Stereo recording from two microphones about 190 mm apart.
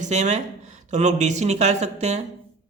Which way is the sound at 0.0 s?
40° right (ahead or behind).